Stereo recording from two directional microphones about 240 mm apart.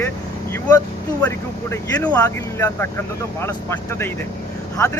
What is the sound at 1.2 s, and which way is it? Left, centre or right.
Speech, centre.